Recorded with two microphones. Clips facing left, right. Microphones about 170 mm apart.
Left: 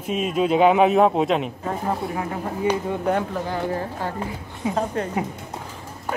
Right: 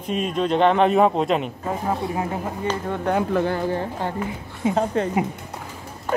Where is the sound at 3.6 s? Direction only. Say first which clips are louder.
Right 2 dB; 25° right (ahead or behind).